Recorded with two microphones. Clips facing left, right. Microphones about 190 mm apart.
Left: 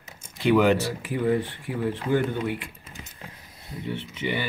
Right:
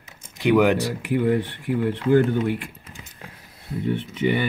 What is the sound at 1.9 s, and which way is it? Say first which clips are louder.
Speech: right 6 dB; 55° right (ahead or behind).